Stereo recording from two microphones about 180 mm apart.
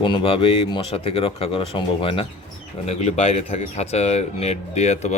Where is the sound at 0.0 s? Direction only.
30° left (ahead or behind).